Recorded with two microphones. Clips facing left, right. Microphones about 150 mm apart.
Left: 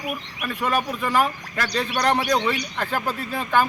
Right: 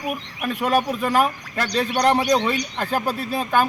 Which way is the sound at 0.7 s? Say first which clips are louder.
Right 3 dB; 40° right (ahead or behind).